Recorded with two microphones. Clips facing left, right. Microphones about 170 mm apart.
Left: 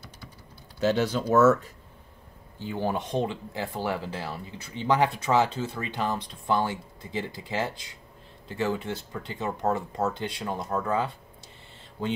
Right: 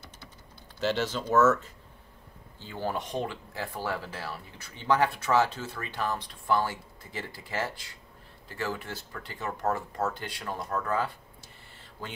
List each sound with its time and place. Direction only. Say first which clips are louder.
0.8 s speech: left 4 dB; 10° left (ahead or behind)